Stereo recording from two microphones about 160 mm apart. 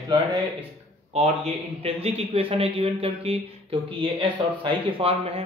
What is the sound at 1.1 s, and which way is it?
Speech, 40° right (ahead or behind).